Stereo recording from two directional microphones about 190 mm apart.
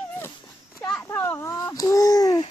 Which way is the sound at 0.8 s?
5° left (ahead or behind).